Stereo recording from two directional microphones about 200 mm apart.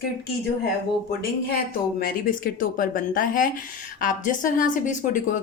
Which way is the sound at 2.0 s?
45° left (ahead or behind).